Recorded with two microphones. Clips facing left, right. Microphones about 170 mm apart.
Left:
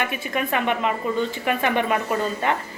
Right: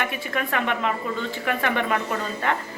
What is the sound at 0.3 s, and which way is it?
A woman's voice, 15° left (ahead or behind).